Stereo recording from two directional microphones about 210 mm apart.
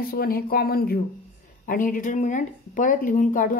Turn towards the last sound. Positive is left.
turn(degrees=40)  # may be behind; listen again after turning